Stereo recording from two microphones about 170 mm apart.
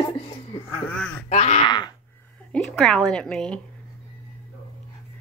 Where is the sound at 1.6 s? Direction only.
25° left (ahead or behind).